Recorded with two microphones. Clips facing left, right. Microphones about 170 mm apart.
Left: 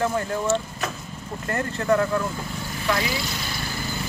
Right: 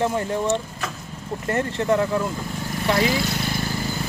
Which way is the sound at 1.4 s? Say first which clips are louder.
Right 2 dB; 25° right (ahead or behind).